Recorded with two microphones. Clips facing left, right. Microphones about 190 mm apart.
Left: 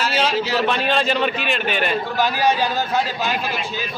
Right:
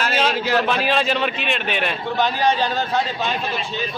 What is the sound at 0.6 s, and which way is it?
A man's voice, centre (ahead or behind).